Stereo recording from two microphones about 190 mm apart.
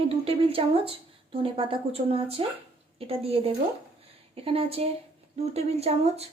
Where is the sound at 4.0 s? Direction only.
30° right (ahead or behind).